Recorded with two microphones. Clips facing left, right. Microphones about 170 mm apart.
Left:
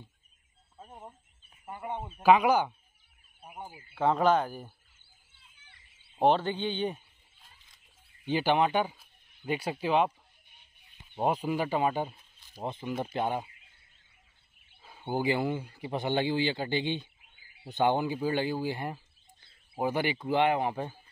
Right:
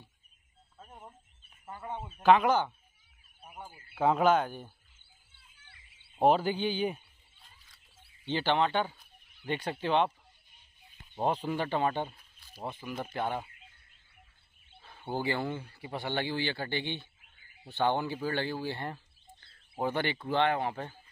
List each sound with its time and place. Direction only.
0.7 s alarm clock: 25° left (ahead or behind)
1.7 s speech: 15° left (ahead or behind)
3.9 s speech: 5° right (ahead or behind)
6.1 s speech: 5° right (ahead or behind)
8.3 s speech: 15° left (ahead or behind)
11.1 s speech: 10° left (ahead or behind)
12.2 s speech: 20° left (ahead or behind)
14.8 s speech: 10° left (ahead or behind)